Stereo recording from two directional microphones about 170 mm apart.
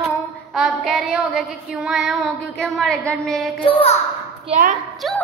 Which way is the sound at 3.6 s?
35° left (ahead or behind).